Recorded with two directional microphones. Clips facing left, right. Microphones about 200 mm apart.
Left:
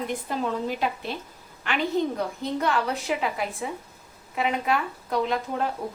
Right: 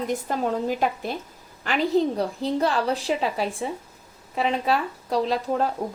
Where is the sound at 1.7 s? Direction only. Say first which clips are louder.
Right 4 dB; 35° right (ahead or behind).